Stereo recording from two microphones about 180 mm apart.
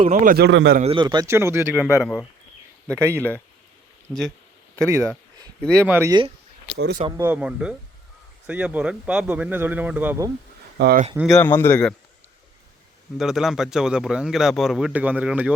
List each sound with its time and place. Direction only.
0.0 s a man's voice: 40° right (ahead or behind)
0.3 s a man's voice: 75° right (ahead or behind)
0.8 s speech: 30° right (ahead or behind); by 1.8 s 15° right (ahead or behind)
2.9 s speech: 15° right (ahead or behind)
4.1 s speech: centre (ahead or behind)
4.9 s a sound: 15° right (ahead or behind)
5.7 s speech: 10° right (ahead or behind)
6.7 s speech: 65° right (ahead or behind)
7.2 s speech: 10° right (ahead or behind)
10.8 s speech: 60° right (ahead or behind)
11.3 s speech: 10° left (ahead or behind)
13.1 s speech: centre (ahead or behind)